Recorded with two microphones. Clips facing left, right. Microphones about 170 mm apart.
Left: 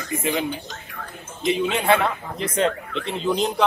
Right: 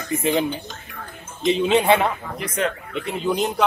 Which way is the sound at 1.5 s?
20° right (ahead or behind).